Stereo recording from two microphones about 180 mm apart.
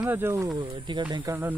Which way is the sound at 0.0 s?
10° right (ahead or behind).